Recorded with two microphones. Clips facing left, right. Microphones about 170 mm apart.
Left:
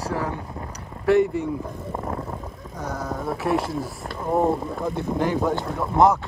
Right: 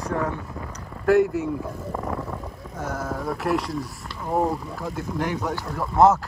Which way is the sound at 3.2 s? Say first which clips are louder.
Left 2 dB; centre (ahead or behind).